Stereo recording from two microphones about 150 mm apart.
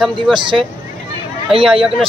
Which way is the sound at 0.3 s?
30° right (ahead or behind).